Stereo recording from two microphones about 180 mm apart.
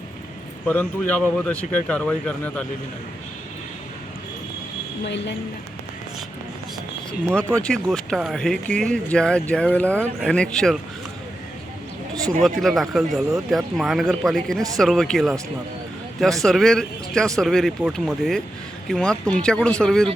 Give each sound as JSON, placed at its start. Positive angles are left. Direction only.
{"t": 0.7, "sound": "speech", "side_deg": 10}
{"t": 5.0, "sound": "a woman's voice", "side_deg": 80}
{"t": 7.7, "sound": "speech", "side_deg": 0}
{"t": 12.4, "sound": "speech", "side_deg": 0}